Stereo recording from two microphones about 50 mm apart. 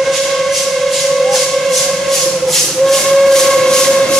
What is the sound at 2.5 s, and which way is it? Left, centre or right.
Steam whistle, centre.